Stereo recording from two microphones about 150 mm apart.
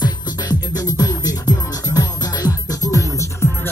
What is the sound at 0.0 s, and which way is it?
Music, 25° left (ahead or behind).